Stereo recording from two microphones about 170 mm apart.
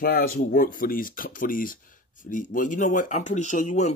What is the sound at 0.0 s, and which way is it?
Speech, 60° left (ahead or behind).